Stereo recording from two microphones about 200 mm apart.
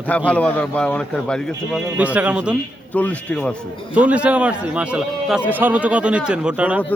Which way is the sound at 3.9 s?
5° right (ahead or behind).